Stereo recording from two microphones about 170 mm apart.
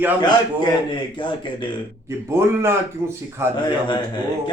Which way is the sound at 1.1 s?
30° left (ahead or behind).